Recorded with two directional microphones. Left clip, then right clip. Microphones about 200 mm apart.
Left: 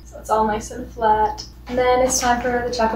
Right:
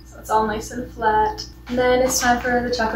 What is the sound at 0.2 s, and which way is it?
A woman's voice, centre (ahead or behind).